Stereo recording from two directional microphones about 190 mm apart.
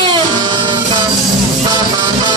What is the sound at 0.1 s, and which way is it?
Music, 25° right (ahead or behind).